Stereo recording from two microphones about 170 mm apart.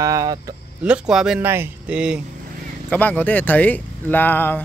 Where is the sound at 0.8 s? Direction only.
5° right (ahead or behind).